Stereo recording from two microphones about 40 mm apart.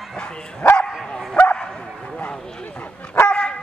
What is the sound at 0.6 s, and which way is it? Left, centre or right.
Dog, left.